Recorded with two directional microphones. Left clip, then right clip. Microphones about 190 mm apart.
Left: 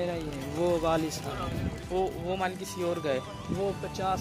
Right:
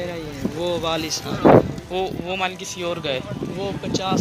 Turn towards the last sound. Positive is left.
turn(degrees=55)  # may be behind; listen again after turning